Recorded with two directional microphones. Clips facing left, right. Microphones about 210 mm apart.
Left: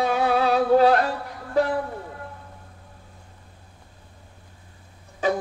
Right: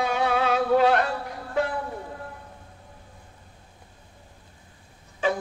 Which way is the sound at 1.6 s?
35° left (ahead or behind).